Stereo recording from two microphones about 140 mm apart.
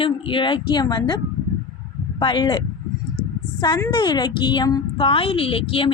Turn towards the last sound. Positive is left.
turn(degrees=40)  # may be behind; listen again after turning